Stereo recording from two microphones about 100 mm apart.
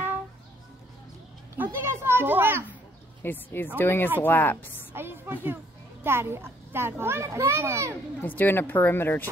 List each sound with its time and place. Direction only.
1.6 s a child's voice: 25° right (ahead or behind)
3.2 s speech: 20° left (ahead or behind)
4.9 s a child's voice: 20° right (ahead or behind)
8.2 s speech: 20° left (ahead or behind)